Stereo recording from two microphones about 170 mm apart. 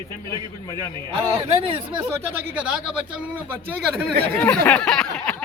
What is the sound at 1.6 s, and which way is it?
Speech, 30° right (ahead or behind).